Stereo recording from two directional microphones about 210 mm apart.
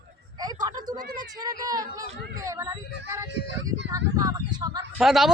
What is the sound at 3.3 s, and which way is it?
Speech, 55° right (ahead or behind).